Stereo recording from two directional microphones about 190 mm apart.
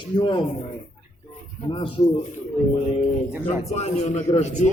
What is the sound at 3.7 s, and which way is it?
A man's voice, 35° left (ahead or behind).